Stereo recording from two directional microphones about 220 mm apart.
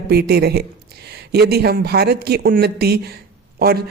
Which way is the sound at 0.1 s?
45° right (ahead or behind).